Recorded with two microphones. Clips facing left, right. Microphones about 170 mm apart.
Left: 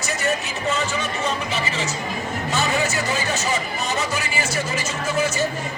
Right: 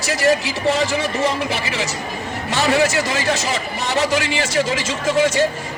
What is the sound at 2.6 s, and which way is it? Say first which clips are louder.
Speech: right 6 dB; 90° right.